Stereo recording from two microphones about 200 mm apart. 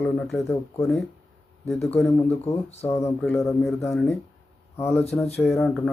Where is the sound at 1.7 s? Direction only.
Centre (ahead or behind).